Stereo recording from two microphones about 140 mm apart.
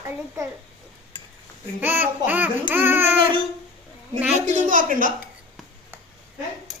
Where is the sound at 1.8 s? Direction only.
15° right (ahead or behind).